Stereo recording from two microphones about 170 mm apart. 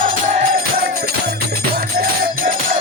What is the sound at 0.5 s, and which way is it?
Music, 60° right (ahead or behind).